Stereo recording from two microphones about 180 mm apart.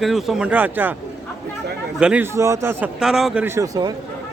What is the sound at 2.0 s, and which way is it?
A man's voice, 10° right (ahead or behind).